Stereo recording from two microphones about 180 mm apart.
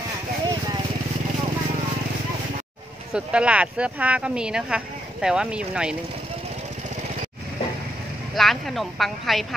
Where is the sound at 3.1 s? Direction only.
5° right (ahead or behind).